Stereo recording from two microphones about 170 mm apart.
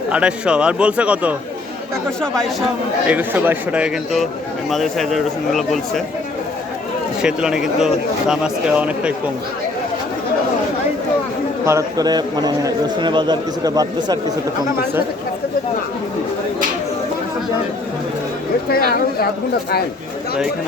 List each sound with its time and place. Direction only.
0.1 s a man's voice: 5° right (ahead or behind)
2.0 s speech: 5° left (ahead or behind)
3.1 s a man's voice: 10° right (ahead or behind)
7.2 s speech: 5° right (ahead or behind)
11.6 s a man's voice: 15° right (ahead or behind)
18.7 s speech: 65° left (ahead or behind)